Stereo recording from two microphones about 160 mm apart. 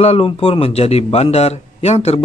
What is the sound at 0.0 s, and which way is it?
Speech, 40° left (ahead or behind).